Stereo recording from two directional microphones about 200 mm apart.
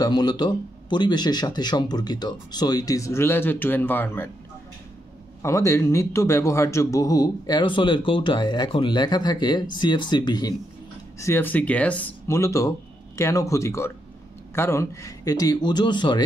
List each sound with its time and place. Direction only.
0.0 s a man's voice: 20° left (ahead or behind)
5.4 s a man's voice: 15° left (ahead or behind)